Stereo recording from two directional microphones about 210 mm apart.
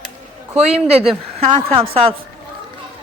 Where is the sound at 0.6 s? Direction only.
30° right (ahead or behind).